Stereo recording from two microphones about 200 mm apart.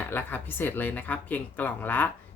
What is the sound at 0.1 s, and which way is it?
A woman's voice, 10° left (ahead or behind).